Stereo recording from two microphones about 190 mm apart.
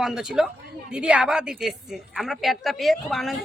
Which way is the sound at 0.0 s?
5° right (ahead or behind).